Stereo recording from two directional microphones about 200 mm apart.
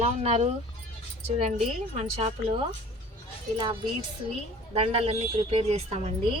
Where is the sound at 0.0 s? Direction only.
30° right (ahead or behind).